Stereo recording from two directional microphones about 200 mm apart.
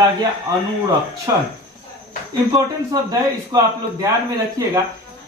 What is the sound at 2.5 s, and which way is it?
A man's voice, 20° right (ahead or behind).